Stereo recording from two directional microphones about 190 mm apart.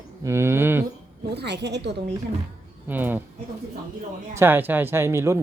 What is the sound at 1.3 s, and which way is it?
Speech, 65° right (ahead or behind).